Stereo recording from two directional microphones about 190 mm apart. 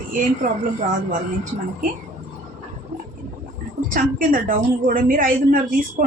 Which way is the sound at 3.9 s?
45° right (ahead or behind).